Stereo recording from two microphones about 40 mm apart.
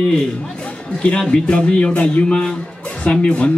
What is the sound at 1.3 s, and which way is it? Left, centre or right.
Speech, left.